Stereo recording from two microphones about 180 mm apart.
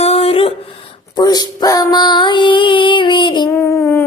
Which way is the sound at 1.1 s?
20° left (ahead or behind).